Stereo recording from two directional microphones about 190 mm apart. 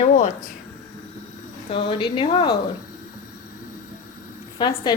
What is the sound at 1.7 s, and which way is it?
Speech, 30° left (ahead or behind).